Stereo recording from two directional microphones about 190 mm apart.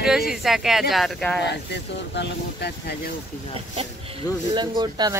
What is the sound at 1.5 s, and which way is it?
Speech, 65° left (ahead or behind).